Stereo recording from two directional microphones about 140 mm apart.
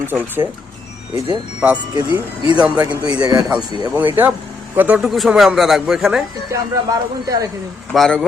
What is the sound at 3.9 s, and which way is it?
Speech, 15° right (ahead or behind).